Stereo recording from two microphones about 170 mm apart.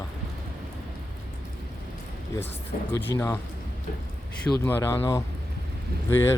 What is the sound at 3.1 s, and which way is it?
Speech, 20° left (ahead or behind).